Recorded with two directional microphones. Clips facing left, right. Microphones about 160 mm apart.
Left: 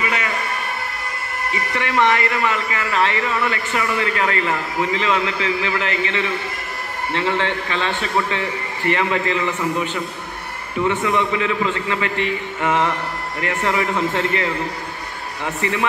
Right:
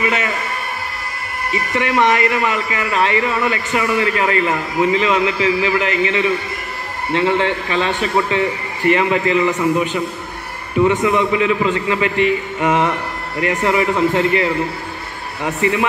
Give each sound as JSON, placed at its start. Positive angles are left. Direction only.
{"t": 1.8, "sound": "speech", "side_deg": -15}
{"t": 15.4, "sound": "speech", "side_deg": -15}